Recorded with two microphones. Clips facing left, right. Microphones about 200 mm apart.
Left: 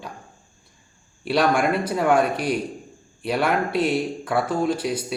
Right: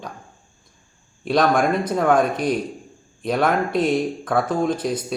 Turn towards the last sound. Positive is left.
turn(degrees=10)  # may be behind; listen again after turning